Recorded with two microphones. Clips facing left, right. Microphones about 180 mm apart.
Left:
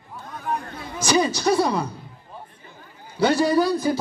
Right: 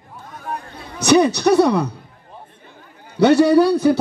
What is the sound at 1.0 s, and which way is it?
Speech, 65° right (ahead or behind).